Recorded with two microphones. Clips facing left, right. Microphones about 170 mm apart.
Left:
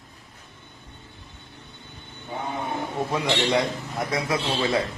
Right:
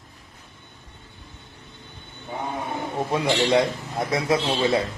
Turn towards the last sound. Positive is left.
turn(degrees=-25)  # may be behind; listen again after turning